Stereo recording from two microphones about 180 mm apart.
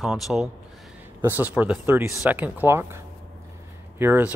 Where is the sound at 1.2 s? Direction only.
10° right (ahead or behind).